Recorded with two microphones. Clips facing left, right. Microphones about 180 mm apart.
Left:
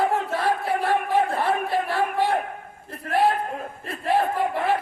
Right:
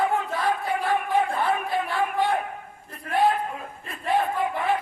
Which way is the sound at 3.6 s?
35° left (ahead or behind).